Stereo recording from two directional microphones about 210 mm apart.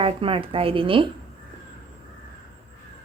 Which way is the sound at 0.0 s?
25° right (ahead or behind).